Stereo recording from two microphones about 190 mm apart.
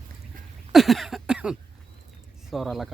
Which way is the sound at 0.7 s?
Centre (ahead or behind).